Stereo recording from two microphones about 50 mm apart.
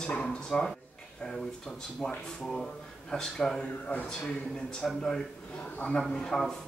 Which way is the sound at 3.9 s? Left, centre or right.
Left.